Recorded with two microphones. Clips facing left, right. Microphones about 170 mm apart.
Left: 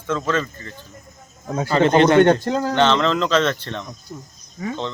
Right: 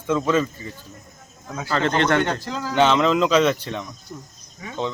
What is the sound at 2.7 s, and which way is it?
Speech, 5° right (ahead or behind).